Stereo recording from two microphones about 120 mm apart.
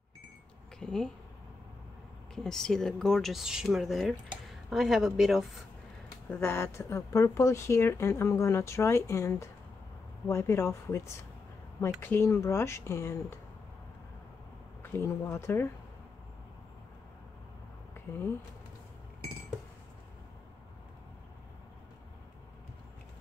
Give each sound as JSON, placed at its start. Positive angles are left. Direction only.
{"t": 0.7, "sound": "speech", "side_deg": 5}
{"t": 2.3, "sound": "a woman's voice", "side_deg": 5}
{"t": 6.2, "sound": "speech", "side_deg": 15}
{"t": 12.0, "sound": "speech", "side_deg": 20}
{"t": 14.8, "sound": "speech", "side_deg": 20}
{"t": 18.1, "sound": "speech", "side_deg": 25}